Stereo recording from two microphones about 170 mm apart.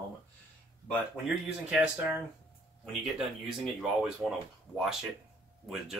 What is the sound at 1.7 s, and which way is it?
Speech, 10° right (ahead or behind).